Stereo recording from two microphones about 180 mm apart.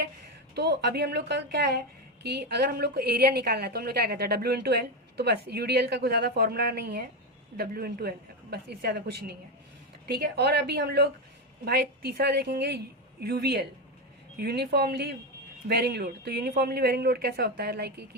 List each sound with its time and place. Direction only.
0.5 s a woman's voice: 65° right (ahead or behind)